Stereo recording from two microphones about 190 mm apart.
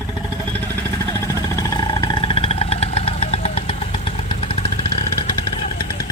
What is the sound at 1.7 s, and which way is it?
Vehicle, 20° left (ahead or behind).